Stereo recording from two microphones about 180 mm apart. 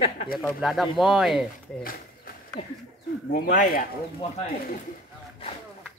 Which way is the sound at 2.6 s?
30° left (ahead or behind).